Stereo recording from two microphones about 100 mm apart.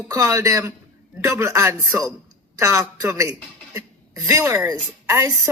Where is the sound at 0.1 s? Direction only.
35° right (ahead or behind).